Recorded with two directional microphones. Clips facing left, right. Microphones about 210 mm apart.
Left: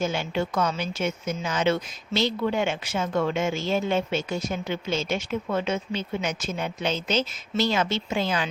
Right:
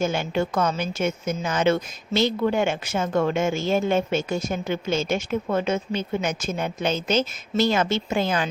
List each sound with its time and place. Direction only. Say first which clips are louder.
0.0 s a woman's voice: right 3 dB; 50° right (ahead or behind)